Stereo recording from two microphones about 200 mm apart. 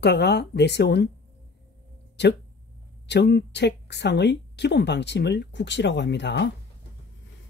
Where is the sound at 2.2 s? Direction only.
60° left (ahead or behind).